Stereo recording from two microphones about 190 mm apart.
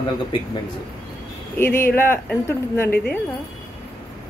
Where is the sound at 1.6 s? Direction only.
15° left (ahead or behind).